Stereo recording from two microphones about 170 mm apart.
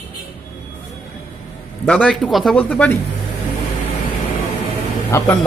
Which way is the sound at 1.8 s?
5° left (ahead or behind).